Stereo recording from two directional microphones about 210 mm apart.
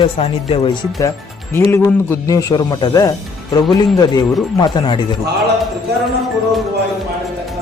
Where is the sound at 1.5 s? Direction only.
15° left (ahead or behind).